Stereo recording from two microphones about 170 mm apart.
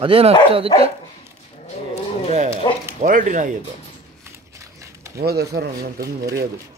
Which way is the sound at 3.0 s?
45° right (ahead or behind).